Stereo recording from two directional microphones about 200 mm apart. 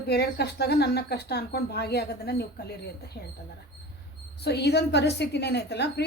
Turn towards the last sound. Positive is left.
turn(degrees=55)  # may be behind; listen again after turning